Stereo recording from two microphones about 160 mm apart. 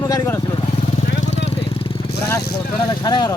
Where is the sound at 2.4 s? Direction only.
85° left.